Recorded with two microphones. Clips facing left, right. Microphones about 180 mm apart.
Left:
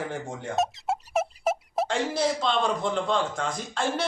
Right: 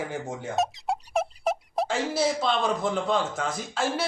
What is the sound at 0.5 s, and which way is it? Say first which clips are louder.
A man's voice: even; centre (ahead or behind).